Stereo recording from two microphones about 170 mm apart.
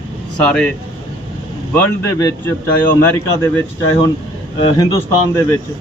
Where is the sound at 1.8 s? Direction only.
15° left (ahead or behind).